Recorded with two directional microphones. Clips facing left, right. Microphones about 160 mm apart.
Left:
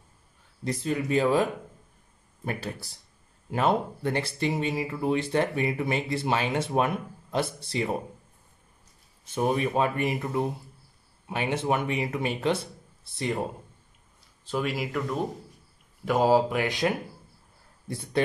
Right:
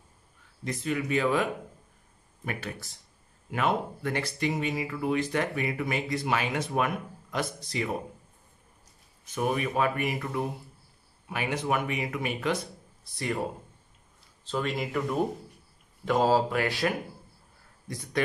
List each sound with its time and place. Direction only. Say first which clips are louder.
0.7 s speech: left 2 dB; 35° left (ahead or behind)
9.2 s speech: left 3 dB; 30° left (ahead or behind)
14.4 s speech: left 1 dB; 10° left (ahead or behind)
16.1 s speech: left 2 dB; 10° left (ahead or behind)
17.8 s speech: left 3 dB; 30° left (ahead or behind)